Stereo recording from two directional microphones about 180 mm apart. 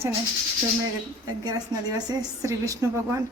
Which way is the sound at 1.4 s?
20° right (ahead or behind).